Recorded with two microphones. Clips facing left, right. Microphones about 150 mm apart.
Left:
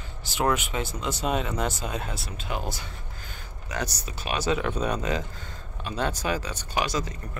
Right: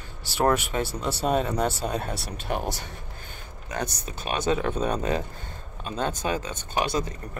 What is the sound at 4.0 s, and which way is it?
Speech, 30° right (ahead or behind).